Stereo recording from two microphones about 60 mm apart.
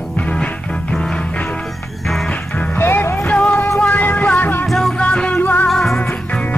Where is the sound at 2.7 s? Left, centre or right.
Left.